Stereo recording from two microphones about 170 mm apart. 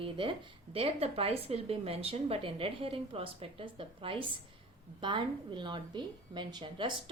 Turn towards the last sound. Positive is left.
turn(degrees=-30)  # may be behind; listen again after turning